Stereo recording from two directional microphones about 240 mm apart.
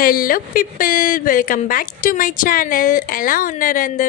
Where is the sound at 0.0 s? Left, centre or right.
Left.